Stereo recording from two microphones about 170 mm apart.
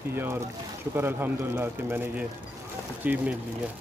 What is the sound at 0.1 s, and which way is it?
A man's voice, 15° right (ahead or behind).